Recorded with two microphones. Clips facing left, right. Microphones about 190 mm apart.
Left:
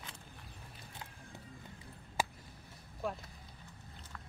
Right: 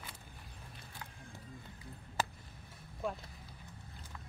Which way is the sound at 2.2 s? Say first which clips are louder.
Left 1 dB; 10° left (ahead or behind).